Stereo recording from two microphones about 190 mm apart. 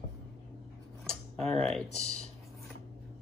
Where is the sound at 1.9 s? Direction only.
35° left (ahead or behind).